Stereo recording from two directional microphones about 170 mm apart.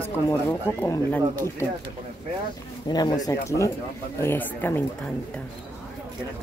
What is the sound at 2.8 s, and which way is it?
A woman's voice, 25° left (ahead or behind).